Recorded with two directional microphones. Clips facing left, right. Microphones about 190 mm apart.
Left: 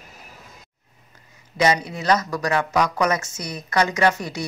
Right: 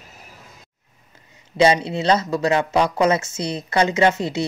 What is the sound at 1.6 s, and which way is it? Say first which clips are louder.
Speech: right 4 dB; 30° right (ahead or behind).